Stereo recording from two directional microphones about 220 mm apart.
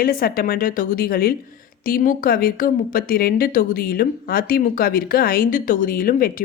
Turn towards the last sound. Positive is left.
turn(degrees=40)  # may be behind; listen again after turning